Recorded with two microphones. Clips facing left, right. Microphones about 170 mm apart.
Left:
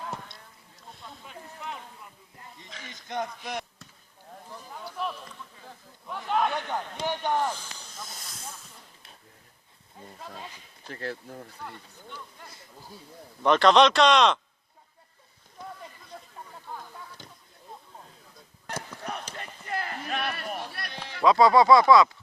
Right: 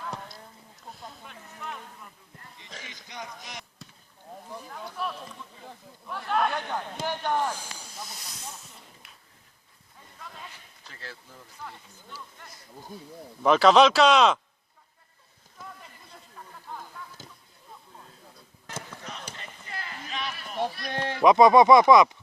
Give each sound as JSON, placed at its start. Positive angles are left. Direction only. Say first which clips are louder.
{"t": 2.8, "sound": "speech", "louder": "left 10 dB", "side_deg": 50}
{"t": 4.7, "sound": "speech", "louder": "left 1 dB", "side_deg": 15}
{"t": 7.5, "sound": "snake", "louder": "right 2 dB", "side_deg": -10}
{"t": 8.0, "sound": "hiss", "louder": "left 2 dB", "side_deg": 50}
{"t": 10.2, "sound": "speech", "louder": "left 2 dB", "side_deg": 30}
{"t": 10.8, "sound": "speech", "louder": "left 10 dB", "side_deg": 55}
{"t": 12.9, "sound": "speech", "louder": "right 6 dB", "side_deg": -20}
{"t": 13.4, "sound": "speech", "louder": "right 1 dB", "side_deg": -5}
{"t": 19.0, "sound": "basketball bounce", "louder": "left 6 dB", "side_deg": 60}
{"t": 19.4, "sound": "a sound", "louder": "left 7 dB", "side_deg": 55}
{"t": 20.9, "sound": "speech", "louder": "right 10 dB", "side_deg": -60}
{"t": 21.2, "sound": "speech", "louder": "right 2 dB", "side_deg": -20}